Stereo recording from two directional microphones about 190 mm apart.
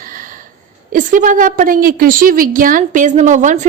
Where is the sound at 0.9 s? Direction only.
45° right (ahead or behind).